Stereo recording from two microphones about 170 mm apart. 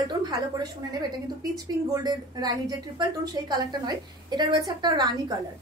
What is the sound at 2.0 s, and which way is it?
A woman's voice, 25° right (ahead or behind).